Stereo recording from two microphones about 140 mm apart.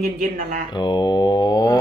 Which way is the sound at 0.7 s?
30° left (ahead or behind).